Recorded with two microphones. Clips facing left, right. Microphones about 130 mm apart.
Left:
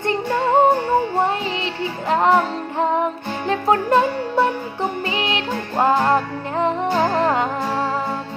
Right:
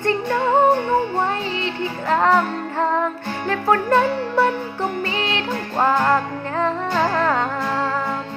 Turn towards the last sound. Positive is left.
turn(degrees=20)  # may be behind; listen again after turning